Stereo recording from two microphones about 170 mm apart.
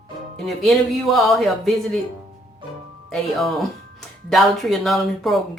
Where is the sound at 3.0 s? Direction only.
Centre (ahead or behind).